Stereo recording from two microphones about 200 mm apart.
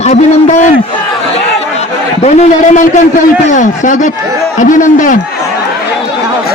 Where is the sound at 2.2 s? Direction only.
35° left (ahead or behind).